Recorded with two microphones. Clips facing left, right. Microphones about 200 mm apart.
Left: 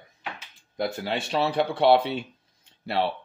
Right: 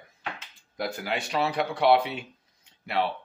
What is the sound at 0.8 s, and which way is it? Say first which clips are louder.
Speech: left 3 dB; 25° left (ahead or behind).